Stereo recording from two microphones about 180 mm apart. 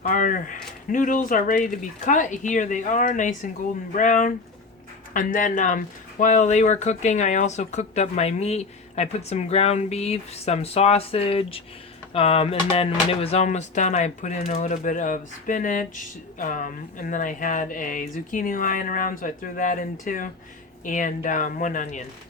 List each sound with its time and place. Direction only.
0.0 s speech: 45° left (ahead or behind)